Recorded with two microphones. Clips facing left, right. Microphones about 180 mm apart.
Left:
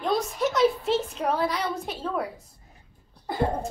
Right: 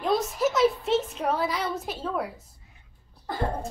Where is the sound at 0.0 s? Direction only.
Centre (ahead or behind).